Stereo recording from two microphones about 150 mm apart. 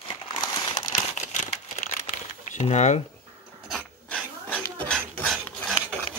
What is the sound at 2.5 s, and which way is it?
Speech, 50° left (ahead or behind).